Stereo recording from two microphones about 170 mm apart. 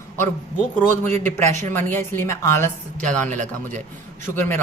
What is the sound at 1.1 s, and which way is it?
Speech, 45° right (ahead or behind).